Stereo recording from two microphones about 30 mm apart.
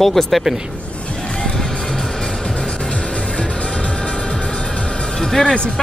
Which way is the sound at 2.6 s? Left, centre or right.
Left.